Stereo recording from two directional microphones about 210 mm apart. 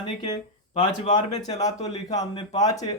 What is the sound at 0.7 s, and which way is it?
Speech, 35° left (ahead or behind).